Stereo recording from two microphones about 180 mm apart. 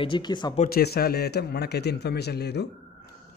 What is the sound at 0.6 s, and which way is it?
A man's voice, 60° left (ahead or behind).